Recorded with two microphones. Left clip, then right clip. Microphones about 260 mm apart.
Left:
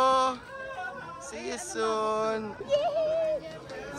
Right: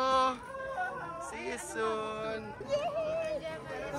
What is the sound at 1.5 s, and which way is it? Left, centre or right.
Speech, centre.